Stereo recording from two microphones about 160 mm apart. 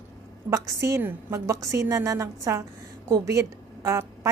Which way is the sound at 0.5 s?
20° right (ahead or behind).